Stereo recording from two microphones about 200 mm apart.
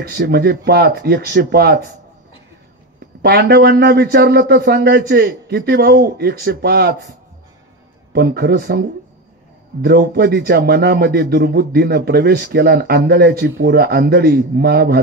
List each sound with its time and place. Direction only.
0.0 s a man's voice: 50° right (ahead or behind)
3.2 s a man's voice: 55° right (ahead or behind)
8.1 s a man's voice: 50° right (ahead or behind)